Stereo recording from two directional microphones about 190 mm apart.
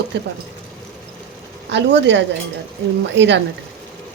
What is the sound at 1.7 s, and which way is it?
A woman's voice, 70° right (ahead or behind).